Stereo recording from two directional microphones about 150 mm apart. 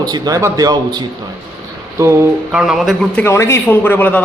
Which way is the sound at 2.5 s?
5° right (ahead or behind).